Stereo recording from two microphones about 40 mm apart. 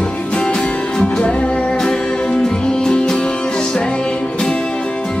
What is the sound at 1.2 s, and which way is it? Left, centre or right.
Music, left.